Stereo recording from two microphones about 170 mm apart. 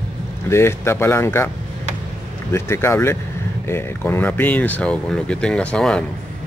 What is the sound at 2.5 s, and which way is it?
Speech, 15° left (ahead or behind).